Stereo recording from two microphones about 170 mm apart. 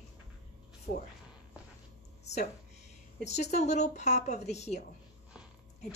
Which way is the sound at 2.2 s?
40° left (ahead or behind).